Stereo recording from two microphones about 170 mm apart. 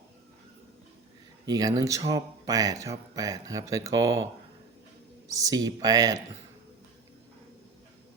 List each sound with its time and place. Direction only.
1.5 s speech: 20° right (ahead or behind)
5.3 s speech: 20° right (ahead or behind)